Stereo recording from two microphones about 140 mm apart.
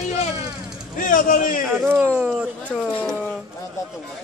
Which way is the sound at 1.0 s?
80° left.